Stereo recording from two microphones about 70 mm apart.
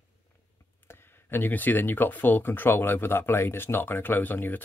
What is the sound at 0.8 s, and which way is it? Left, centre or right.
Speech, left.